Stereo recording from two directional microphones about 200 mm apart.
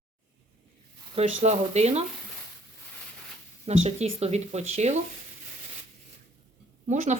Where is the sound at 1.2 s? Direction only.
35° right (ahead or behind).